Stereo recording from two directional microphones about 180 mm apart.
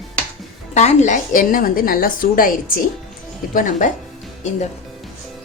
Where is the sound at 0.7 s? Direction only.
40° left (ahead or behind).